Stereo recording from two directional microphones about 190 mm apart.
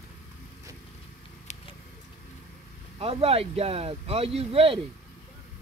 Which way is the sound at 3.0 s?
30° right (ahead or behind).